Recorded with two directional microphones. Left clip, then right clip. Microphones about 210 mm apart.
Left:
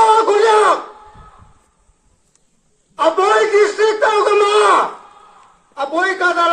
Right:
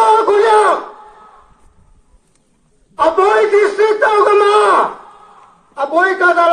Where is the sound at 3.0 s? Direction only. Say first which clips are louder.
Right 2 dB; 30° left (ahead or behind).